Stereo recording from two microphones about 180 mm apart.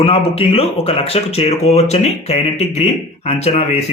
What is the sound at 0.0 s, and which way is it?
Speech, 30° left (ahead or behind).